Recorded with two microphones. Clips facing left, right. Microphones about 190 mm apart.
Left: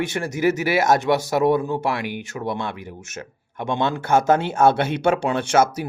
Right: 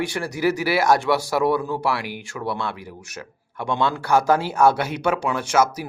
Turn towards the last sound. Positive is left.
turn(degrees=30)  # may be behind; listen again after turning